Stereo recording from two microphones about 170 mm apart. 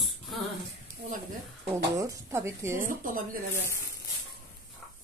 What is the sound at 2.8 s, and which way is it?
Speech, 55° right (ahead or behind).